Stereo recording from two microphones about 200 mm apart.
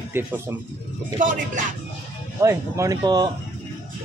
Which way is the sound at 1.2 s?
40° right (ahead or behind).